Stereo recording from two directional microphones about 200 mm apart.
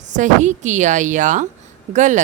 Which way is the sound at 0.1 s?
35° right (ahead or behind).